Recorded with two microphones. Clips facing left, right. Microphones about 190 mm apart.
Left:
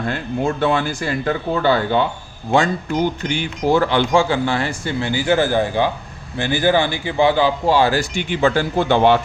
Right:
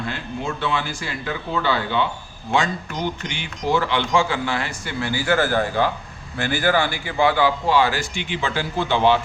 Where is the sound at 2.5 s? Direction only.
35° left (ahead or behind).